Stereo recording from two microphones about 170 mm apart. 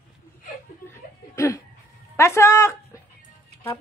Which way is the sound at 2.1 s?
15° left (ahead or behind).